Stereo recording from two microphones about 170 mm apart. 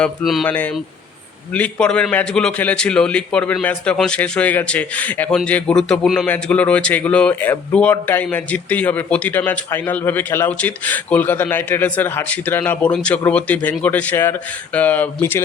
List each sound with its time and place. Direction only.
0.0 s a man's voice: 5° left (ahead or behind)